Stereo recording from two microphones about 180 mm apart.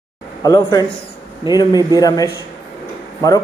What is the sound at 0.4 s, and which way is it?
A man's voice, 20° left (ahead or behind).